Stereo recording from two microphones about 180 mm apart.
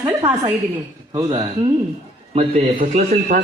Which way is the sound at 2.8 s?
45° right (ahead or behind).